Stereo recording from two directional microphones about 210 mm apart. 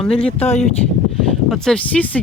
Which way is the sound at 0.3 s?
30° left (ahead or behind).